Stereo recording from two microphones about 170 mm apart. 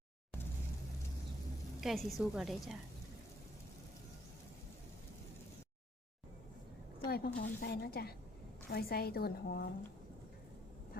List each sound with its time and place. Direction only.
1.8 s a woman's voice: centre (ahead or behind)
7.1 s a woman's voice: 70° left (ahead or behind)